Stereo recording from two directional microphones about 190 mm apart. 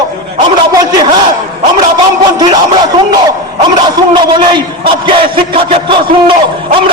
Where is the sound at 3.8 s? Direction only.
25° right (ahead or behind).